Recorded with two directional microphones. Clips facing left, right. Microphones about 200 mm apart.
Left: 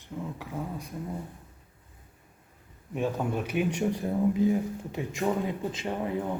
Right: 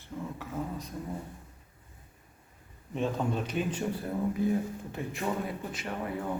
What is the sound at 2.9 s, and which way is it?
Speech, 10° left (ahead or behind).